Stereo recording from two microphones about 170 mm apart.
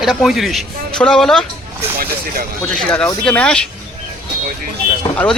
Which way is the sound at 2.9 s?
5° left (ahead or behind).